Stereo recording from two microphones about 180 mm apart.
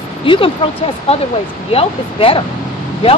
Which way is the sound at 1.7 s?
30° left (ahead or behind).